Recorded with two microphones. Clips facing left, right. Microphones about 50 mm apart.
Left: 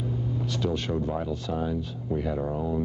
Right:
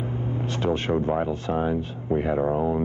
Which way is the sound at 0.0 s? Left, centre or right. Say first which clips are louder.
Right 2 dB; right.